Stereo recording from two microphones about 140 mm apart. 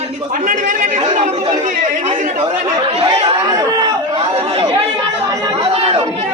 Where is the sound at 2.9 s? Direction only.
45° right (ahead or behind).